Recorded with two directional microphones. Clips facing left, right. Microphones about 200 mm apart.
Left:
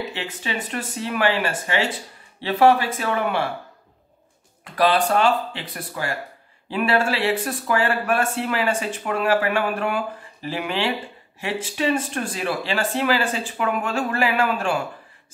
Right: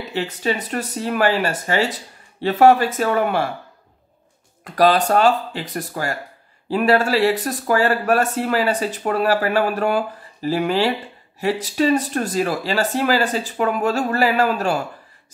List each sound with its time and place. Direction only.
0.1 s speech: 40° right (ahead or behind)
4.7 s speech: 40° right (ahead or behind)